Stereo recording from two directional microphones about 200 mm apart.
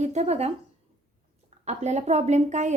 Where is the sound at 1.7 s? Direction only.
35° right (ahead or behind).